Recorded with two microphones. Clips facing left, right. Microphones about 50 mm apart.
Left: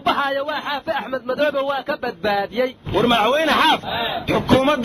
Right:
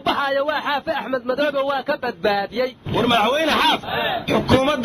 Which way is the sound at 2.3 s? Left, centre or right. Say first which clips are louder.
Left 1 dB; left.